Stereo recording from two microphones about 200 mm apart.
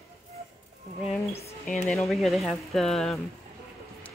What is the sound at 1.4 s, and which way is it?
Speech, 35° left (ahead or behind).